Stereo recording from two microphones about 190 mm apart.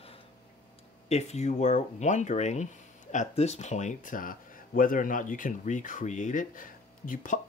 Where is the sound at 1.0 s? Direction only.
35° left (ahead or behind).